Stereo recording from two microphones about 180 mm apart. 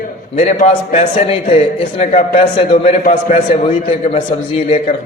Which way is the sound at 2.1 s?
45° left (ahead or behind).